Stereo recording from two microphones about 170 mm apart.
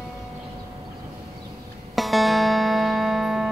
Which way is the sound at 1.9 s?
Centre (ahead or behind).